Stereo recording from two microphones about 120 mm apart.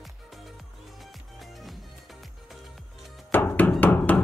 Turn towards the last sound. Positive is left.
turn(degrees=15)  # may be behind; listen again after turning